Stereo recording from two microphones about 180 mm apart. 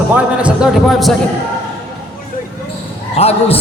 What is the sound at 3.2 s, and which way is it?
Speech, 35° left (ahead or behind).